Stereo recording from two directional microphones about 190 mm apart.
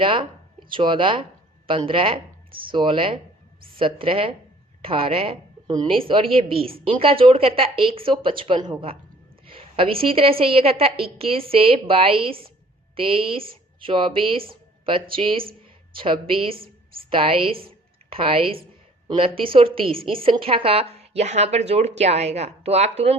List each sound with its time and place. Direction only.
0.0 s a woman's voice: 25° right (ahead or behind)
16.6 s a sound: 50° right (ahead or behind)
17.1 s a woman's voice: 30° right (ahead or behind)